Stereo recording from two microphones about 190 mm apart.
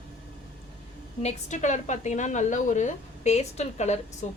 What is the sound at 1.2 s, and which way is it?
A woman's voice, 40° left (ahead or behind).